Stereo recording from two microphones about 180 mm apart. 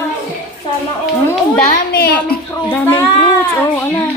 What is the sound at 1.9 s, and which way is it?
Speech, 55° left (ahead or behind).